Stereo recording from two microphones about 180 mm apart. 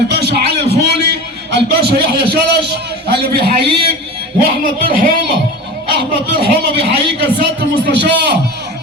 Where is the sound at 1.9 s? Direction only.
65° right (ahead or behind).